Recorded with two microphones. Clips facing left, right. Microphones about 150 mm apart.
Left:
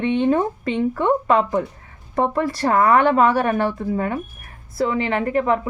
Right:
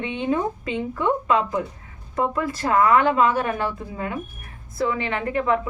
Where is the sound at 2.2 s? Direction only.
35° left (ahead or behind).